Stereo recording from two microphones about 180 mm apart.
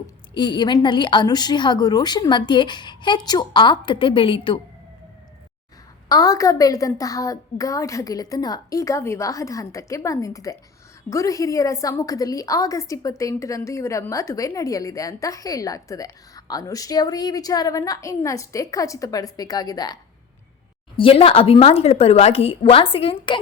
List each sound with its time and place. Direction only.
0.3 s a woman's voice: 25° left (ahead or behind)
6.1 s a woman's voice: 20° left (ahead or behind)